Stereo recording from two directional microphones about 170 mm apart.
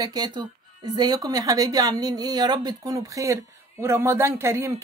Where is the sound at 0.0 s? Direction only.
25° right (ahead or behind).